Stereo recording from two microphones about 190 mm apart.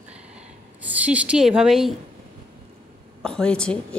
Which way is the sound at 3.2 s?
5° left (ahead or behind).